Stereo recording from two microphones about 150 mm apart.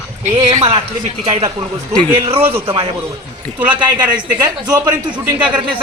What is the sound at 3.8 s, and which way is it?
A man's voice, 30° right (ahead or behind).